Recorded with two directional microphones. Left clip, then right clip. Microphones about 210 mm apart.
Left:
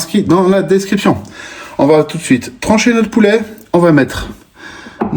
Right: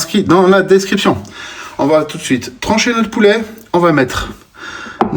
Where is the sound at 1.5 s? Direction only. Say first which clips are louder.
Left 2 dB; 40° right (ahead or behind).